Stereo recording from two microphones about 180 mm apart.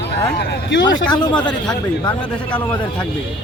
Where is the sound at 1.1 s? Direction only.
25° left (ahead or behind).